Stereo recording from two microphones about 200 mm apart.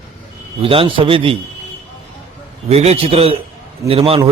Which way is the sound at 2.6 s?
30° right (ahead or behind).